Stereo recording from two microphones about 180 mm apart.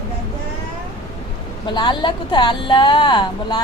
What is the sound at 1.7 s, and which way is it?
Speech, 25° left (ahead or behind).